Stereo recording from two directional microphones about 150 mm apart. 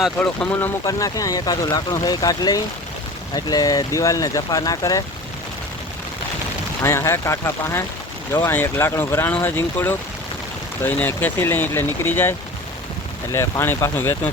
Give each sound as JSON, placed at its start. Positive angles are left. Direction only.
{"t": 0.2, "sound": "speech", "side_deg": 10}
{"t": 6.8, "sound": "speech", "side_deg": 15}
{"t": 13.3, "sound": "speech", "side_deg": 15}